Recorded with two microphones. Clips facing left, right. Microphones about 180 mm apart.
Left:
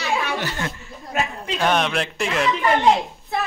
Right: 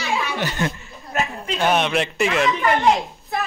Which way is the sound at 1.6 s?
5° right (ahead or behind).